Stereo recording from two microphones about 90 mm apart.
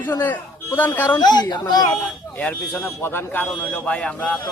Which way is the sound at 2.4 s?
20° left (ahead or behind).